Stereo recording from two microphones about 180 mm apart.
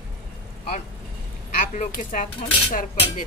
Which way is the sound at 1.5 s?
45° left (ahead or behind).